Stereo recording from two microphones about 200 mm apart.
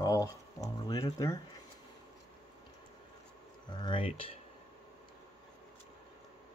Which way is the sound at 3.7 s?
25° left (ahead or behind).